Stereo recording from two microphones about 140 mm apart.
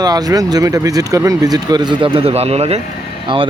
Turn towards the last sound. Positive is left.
turn(degrees=-35)  # may be behind; listen again after turning